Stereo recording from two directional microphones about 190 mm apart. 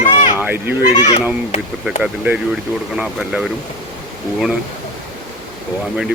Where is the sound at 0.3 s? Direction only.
10° right (ahead or behind).